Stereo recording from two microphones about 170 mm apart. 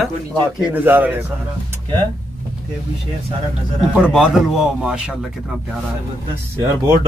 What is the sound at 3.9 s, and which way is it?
Speech, 5° right (ahead or behind).